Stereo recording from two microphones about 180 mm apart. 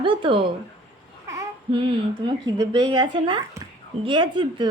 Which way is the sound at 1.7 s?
25° right (ahead or behind).